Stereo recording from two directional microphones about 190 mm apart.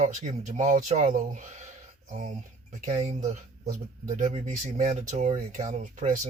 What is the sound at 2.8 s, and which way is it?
Speech, 30° right (ahead or behind).